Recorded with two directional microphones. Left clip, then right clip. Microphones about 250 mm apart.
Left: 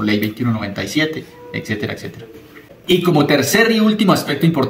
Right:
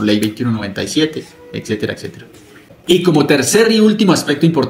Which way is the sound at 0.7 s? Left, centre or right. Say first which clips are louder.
Right 3 dB; right.